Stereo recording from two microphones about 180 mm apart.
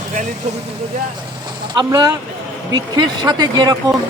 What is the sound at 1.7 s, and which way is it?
Speech, 20° right (ahead or behind).